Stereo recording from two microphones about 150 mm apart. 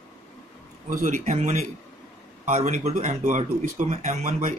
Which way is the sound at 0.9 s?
60° right (ahead or behind).